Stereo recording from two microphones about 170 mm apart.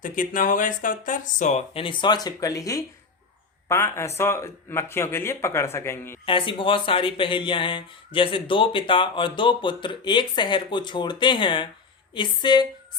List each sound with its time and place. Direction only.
0.0 s speech: 50° left (ahead or behind); by 6.1 s 15° left (ahead or behind)
6.2 s speech: 30° left (ahead or behind)